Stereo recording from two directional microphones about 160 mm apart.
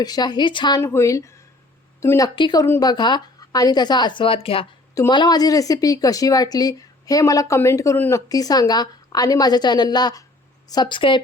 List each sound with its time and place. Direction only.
0.0 s speech: 25° left (ahead or behind)
0.8 s speech: 15° left (ahead or behind)
2.6 s speech: 15° left (ahead or behind)
2.9 s speech: 25° left (ahead or behind)
4.9 s speech: 25° left (ahead or behind)